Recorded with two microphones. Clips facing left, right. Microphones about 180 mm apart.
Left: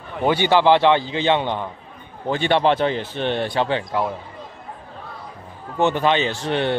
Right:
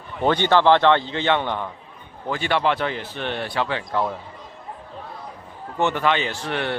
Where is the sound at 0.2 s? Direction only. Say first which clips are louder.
Left 1 dB; 10° left (ahead or behind).